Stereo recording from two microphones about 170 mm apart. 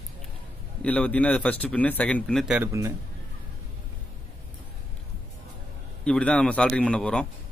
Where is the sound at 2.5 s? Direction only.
15° right (ahead or behind).